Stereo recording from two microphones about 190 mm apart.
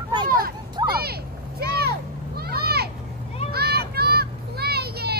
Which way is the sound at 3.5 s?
55° right (ahead or behind).